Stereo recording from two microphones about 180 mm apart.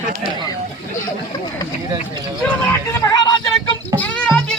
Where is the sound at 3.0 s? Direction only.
20° left (ahead or behind).